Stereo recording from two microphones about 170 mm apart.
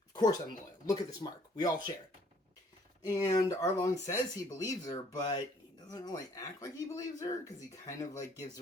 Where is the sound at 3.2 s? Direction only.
25° left (ahead or behind).